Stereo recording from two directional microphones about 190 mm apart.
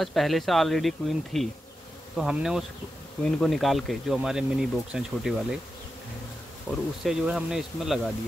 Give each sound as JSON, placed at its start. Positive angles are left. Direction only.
{"t": 0.0, "sound": "speech", "side_deg": 0}
{"t": 6.7, "sound": "speech", "side_deg": 0}